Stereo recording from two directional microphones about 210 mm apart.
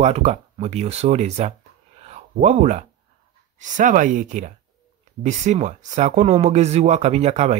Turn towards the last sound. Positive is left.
turn(degrees=-30)  # may be behind; listen again after turning